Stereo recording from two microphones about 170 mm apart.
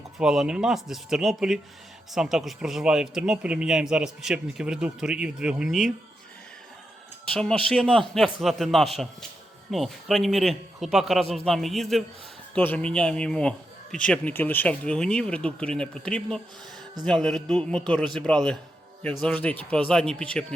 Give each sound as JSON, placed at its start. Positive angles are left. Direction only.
{"t": 0.2, "sound": "a man's voice", "side_deg": -5}
{"t": 7.3, "sound": "a man's voice", "side_deg": 5}